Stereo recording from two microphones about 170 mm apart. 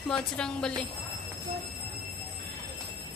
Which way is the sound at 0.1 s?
5° left (ahead or behind).